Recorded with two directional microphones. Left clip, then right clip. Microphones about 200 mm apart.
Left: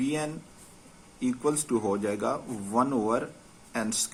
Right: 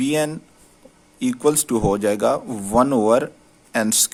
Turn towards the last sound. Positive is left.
turn(degrees=-60)  # may be behind; listen again after turning